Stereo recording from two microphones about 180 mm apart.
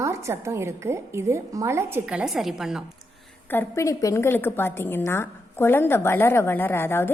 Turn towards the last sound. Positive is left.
turn(degrees=10)  # may be behind; listen again after turning